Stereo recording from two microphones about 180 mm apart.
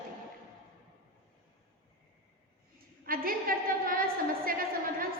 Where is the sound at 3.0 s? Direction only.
55° right (ahead or behind).